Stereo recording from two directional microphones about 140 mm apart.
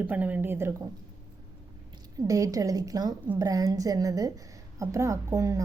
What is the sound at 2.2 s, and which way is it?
A woman's voice, 25° right (ahead or behind).